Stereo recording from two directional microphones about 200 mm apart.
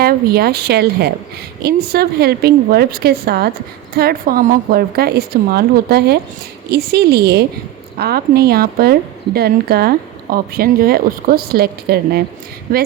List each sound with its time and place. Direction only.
0.0 s a woman's voice: 50° right (ahead or behind)